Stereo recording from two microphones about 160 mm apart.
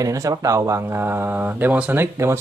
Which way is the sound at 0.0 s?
20° right (ahead or behind).